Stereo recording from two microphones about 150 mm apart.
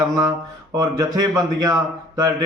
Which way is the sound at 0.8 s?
25° right (ahead or behind).